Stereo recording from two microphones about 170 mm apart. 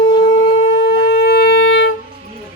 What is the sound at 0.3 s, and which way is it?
Shofar, 90° left.